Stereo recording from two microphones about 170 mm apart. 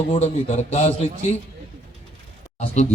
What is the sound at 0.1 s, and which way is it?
A man's voice, 40° left (ahead or behind).